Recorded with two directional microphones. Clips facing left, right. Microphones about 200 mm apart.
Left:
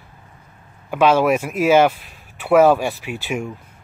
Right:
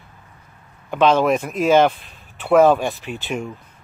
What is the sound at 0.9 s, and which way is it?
Speech, 10° left (ahead or behind).